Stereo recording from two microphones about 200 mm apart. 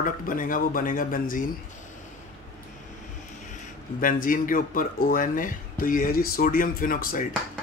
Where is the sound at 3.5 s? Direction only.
45° left (ahead or behind).